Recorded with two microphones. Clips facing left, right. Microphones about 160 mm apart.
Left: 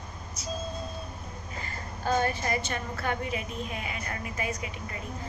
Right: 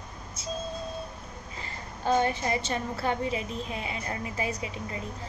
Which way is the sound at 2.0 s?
20° right (ahead or behind).